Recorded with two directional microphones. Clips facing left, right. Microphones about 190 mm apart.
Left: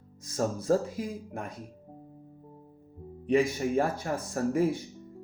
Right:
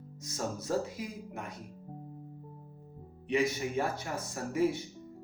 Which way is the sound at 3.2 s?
50° left (ahead or behind).